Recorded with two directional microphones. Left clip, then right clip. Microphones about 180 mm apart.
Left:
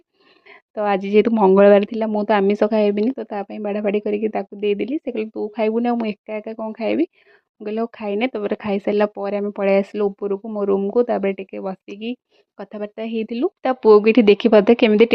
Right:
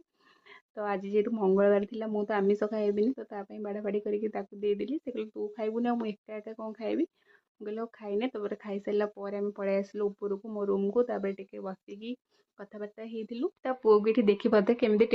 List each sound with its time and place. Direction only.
0.4 s speech: 35° left (ahead or behind)
10.9 s speech: 40° left (ahead or behind)